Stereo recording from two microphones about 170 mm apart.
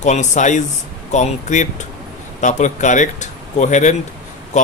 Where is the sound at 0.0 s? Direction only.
45° left (ahead or behind).